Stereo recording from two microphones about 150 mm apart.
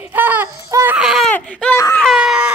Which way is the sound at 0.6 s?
20° right (ahead or behind).